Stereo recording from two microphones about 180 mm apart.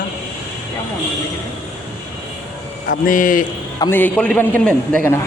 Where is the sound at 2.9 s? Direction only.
50° left (ahead or behind).